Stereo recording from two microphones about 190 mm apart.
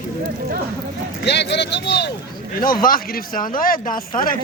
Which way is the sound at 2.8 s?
50° left (ahead or behind).